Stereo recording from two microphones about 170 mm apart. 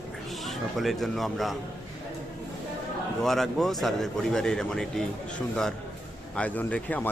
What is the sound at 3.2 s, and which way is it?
Speech, centre (ahead or behind).